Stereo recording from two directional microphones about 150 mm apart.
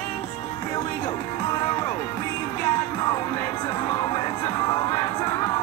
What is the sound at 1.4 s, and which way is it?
Music, 25° left (ahead or behind).